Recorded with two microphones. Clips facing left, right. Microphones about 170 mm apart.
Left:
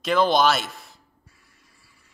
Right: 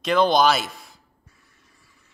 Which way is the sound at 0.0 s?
Centre (ahead or behind).